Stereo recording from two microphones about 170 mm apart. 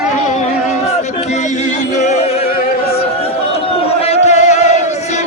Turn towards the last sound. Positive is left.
turn(degrees=40)  # may be behind; listen again after turning